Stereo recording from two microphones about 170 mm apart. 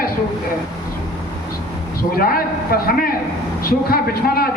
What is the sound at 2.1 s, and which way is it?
A man's voice, 60° left (ahead or behind).